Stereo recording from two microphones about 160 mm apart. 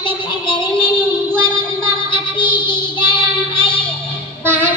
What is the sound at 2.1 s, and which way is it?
Child singing, 30° left (ahead or behind).